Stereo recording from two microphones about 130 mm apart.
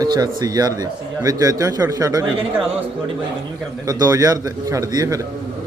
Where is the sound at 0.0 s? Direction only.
30° right (ahead or behind).